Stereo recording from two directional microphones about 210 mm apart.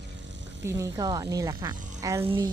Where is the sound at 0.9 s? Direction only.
15° right (ahead or behind).